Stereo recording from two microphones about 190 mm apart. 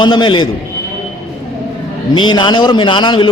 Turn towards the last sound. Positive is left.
turn(degrees=25)  # may be behind; listen again after turning